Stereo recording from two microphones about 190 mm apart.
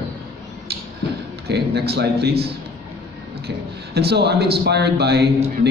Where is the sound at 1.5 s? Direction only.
60° right (ahead or behind).